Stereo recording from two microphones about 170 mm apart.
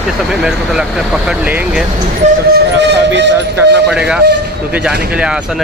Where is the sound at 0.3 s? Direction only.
5° right (ahead or behind).